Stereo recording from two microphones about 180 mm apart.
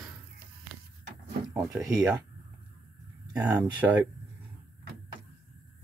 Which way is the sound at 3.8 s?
10° right (ahead or behind).